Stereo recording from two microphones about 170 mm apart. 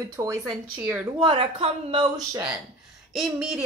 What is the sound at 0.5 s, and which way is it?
Speech, 10° right (ahead or behind).